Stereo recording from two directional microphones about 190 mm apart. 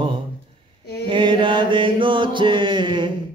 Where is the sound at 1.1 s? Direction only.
25° right (ahead or behind).